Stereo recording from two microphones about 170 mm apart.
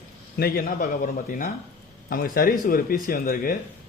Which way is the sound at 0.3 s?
60° left (ahead or behind).